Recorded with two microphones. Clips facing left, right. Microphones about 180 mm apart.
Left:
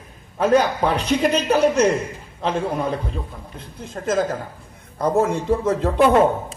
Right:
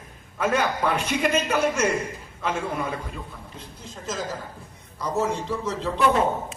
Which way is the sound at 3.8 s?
55° left (ahead or behind).